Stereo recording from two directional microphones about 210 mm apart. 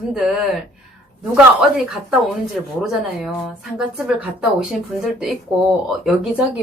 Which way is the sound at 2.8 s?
Centre (ahead or behind).